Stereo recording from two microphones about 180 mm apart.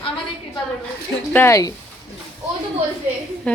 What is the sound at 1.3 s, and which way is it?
Speech, 15° left (ahead or behind).